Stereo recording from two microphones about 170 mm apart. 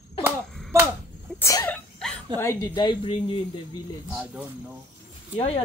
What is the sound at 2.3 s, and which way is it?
Speech, 15° left (ahead or behind).